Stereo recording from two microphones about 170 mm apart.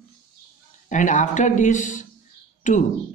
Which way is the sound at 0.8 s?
50° left (ahead or behind).